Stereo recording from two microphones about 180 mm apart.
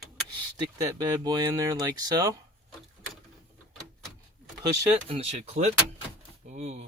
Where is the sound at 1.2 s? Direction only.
20° right (ahead or behind).